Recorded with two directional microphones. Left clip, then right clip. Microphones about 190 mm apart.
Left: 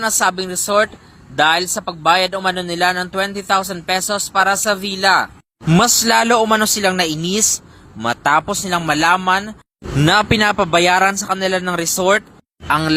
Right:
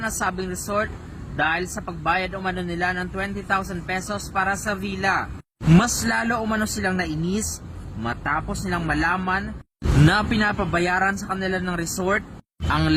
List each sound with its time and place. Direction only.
0.0 s speech: 45° left (ahead or behind)
5.6 s speech: 35° left (ahead or behind)
10.0 s speech: 35° left (ahead or behind)
12.6 s speech: 25° left (ahead or behind)